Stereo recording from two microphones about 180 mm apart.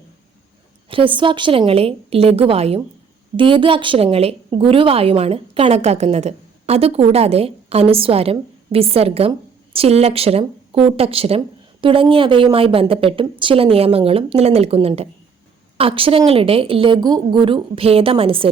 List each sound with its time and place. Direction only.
0.9 s a woman's voice: 30° right (ahead or behind)